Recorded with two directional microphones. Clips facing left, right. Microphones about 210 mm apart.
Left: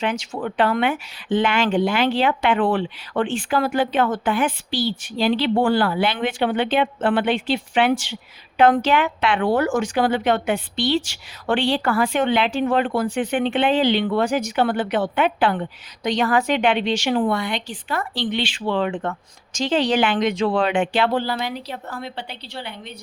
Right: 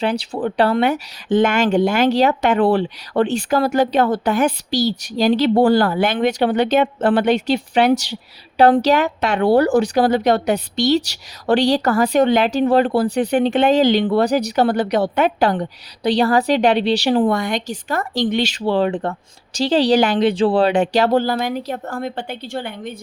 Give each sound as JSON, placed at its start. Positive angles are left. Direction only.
{"t": 0.0, "sound": "speech", "side_deg": -35}